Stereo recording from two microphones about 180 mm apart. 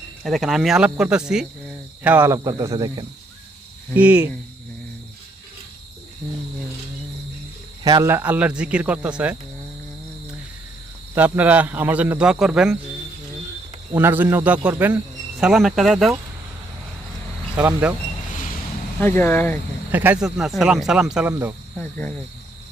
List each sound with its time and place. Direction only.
0.3 s speech: centre (ahead or behind); by 3.1 s 25° right (ahead or behind)
3.9 s speech: 5° right (ahead or behind)
7.9 s speech: 20° right (ahead or behind)
11.1 s speech: 10° right (ahead or behind)
13.9 s speech: 10° right (ahead or behind)
17.6 s speech: 10° right (ahead or behind)
18.9 s speech: 10° left (ahead or behind)
19.9 s speech: 10° right (ahead or behind)
21.8 s speech: 10° left (ahead or behind)